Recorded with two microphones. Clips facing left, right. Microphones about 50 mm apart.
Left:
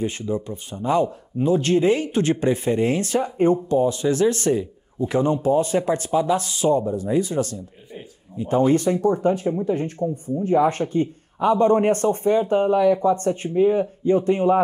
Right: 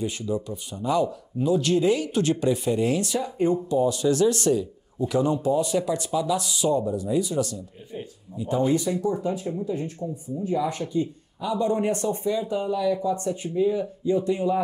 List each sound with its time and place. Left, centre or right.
0.0 s speech: left